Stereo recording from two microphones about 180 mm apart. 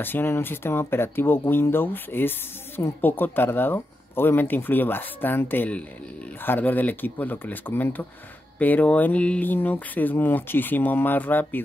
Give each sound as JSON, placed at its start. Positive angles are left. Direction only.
{"t": 0.0, "sound": "speech", "side_deg": 10}